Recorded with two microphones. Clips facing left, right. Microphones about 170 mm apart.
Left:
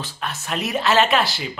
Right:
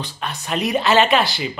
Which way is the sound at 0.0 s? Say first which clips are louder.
Right 1 dB; centre (ahead or behind).